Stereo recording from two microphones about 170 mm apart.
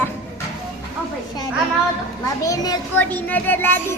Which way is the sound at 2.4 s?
20° left (ahead or behind).